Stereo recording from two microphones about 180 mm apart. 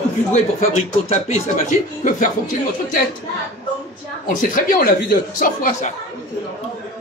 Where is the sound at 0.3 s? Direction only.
40° left (ahead or behind).